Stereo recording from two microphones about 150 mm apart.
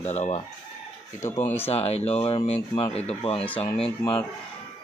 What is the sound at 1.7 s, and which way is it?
Speech, 45° left (ahead or behind).